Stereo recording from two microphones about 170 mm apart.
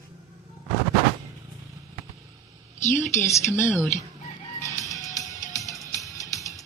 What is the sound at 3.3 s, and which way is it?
Speech, 15° left (ahead or behind).